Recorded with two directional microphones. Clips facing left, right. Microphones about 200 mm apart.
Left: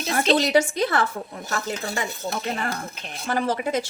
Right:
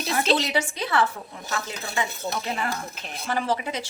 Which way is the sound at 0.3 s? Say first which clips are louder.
Left 6 dB; 45° left (ahead or behind).